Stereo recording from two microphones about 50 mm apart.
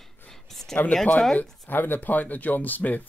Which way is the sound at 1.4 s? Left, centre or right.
Left.